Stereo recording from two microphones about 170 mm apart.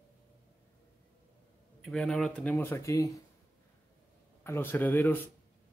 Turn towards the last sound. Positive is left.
turn(degrees=10)  # may be behind; listen again after turning